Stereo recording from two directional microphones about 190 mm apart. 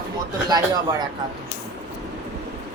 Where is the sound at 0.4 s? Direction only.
20° right (ahead or behind).